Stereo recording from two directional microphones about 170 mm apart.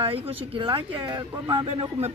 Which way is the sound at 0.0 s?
30° right (ahead or behind).